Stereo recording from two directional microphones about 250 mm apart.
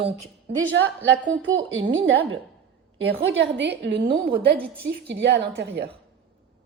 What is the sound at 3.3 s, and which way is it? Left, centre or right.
Speech, right.